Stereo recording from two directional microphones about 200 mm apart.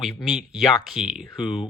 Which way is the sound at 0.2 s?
Centre (ahead or behind).